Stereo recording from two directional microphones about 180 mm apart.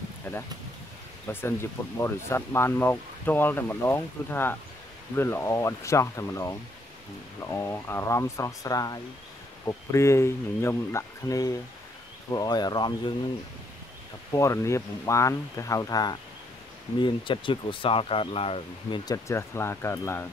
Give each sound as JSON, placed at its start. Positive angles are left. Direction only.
{"t": 1.2, "sound": "speech", "side_deg": 10}
{"t": 14.3, "sound": "speech", "side_deg": 15}
{"t": 19.0, "sound": "speech", "side_deg": 15}